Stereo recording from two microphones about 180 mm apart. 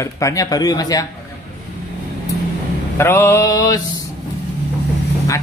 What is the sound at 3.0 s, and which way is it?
Speech, 15° left (ahead or behind).